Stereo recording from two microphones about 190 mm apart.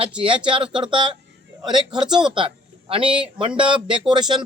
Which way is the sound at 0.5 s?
25° right (ahead or behind).